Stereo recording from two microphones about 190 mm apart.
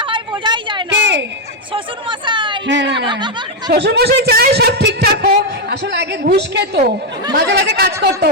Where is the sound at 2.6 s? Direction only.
70° right (ahead or behind).